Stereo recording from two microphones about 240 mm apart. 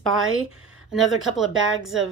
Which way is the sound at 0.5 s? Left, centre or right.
Right.